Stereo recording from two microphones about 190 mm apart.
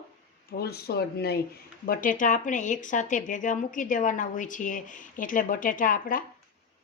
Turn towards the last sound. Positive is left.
turn(degrees=45)  # may be behind; listen again after turning